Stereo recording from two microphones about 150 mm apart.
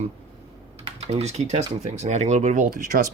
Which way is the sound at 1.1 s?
45° right (ahead or behind).